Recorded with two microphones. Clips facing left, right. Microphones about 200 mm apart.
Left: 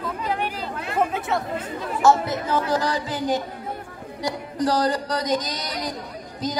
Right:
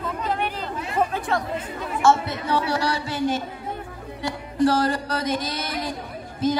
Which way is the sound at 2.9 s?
15° left (ahead or behind).